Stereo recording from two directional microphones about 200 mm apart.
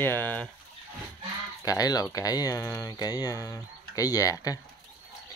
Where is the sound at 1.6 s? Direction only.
20° left (ahead or behind).